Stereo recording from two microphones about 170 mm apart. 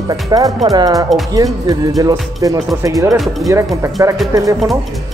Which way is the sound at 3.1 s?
Centre (ahead or behind).